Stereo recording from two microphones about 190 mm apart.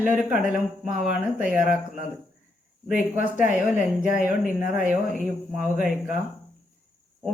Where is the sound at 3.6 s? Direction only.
45° left (ahead or behind).